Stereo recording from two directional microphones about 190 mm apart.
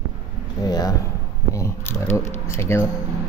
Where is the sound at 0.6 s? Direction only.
20° left (ahead or behind).